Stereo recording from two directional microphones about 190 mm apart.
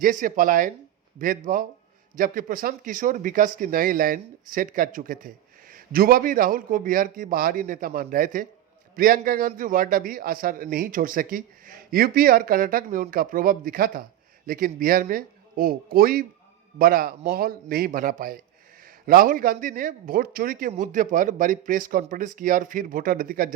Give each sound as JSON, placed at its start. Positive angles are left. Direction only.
{"t": 0.0, "sound": "speech", "side_deg": -45}